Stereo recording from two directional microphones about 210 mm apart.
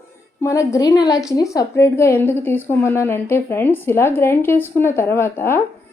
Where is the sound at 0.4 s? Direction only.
15° left (ahead or behind).